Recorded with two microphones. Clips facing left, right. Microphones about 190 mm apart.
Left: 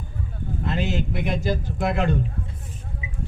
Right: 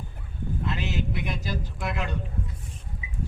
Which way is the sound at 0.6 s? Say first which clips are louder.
Left 6 dB; 50° left (ahead or behind).